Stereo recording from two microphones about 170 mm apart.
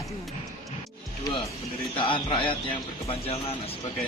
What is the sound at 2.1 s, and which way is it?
A man's voice, 30° left (ahead or behind).